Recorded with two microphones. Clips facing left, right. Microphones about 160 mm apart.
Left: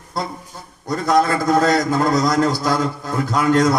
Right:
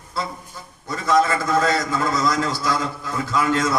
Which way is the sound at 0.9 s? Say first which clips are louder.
Left 2 dB; 40° left (ahead or behind).